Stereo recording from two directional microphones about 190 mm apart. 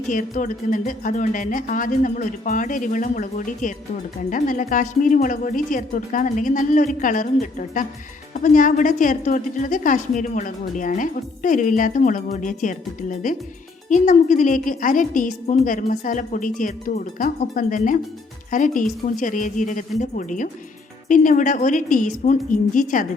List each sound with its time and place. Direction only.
0.1 s a woman's voice: 45° left (ahead or behind)